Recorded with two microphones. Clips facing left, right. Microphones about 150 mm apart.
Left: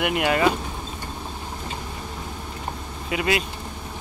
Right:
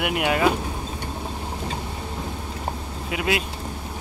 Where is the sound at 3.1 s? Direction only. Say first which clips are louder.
Left 1 dB; centre (ahead or behind).